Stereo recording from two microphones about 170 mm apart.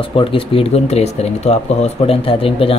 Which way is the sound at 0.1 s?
30° left (ahead or behind).